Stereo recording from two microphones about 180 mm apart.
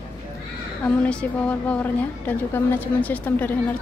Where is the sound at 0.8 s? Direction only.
5° left (ahead or behind).